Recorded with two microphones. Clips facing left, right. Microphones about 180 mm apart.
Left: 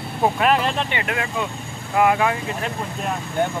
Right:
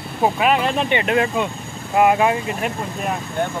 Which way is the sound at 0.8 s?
25° right (ahead or behind).